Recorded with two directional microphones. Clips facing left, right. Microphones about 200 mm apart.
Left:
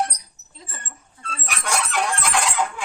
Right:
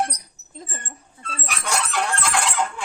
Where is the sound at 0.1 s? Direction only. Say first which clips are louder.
Right 7 dB; 50° right (ahead or behind).